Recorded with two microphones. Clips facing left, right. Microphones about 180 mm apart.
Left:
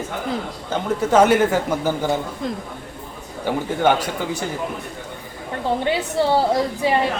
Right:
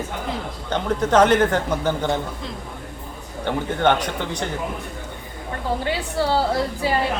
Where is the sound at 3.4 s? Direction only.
10° left (ahead or behind).